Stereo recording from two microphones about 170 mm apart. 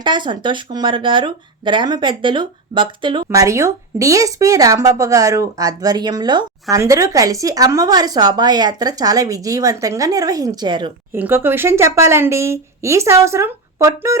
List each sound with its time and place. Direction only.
0.0 s speech: 25° right (ahead or behind)
3.2 s speech: 20° right (ahead or behind)
11.1 s speech: 10° right (ahead or behind)